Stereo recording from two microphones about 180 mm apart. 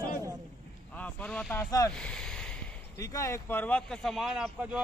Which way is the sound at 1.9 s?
5° left (ahead or behind).